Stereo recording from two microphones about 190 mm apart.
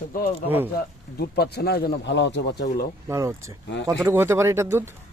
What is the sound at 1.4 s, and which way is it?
Speech, 60° left (ahead or behind).